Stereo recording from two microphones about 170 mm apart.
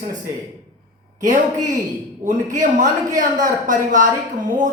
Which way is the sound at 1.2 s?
50° right (ahead or behind).